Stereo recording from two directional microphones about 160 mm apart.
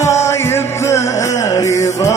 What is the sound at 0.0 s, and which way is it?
Music, 20° left (ahead or behind).